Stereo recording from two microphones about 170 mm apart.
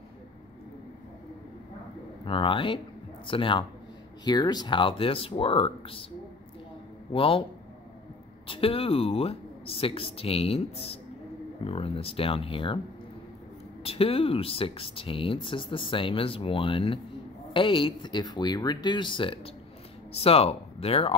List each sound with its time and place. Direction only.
2.2 s speech: 30° left (ahead or behind)
7.1 s speech: 30° left (ahead or behind)
8.5 s speech: 35° left (ahead or behind)
13.8 s speech: 35° left (ahead or behind)